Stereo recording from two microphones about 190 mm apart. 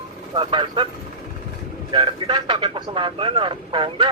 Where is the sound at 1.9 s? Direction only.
25° right (ahead or behind).